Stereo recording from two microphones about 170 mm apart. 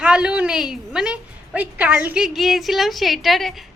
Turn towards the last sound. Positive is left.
turn(degrees=0)  # may be behind; listen again after turning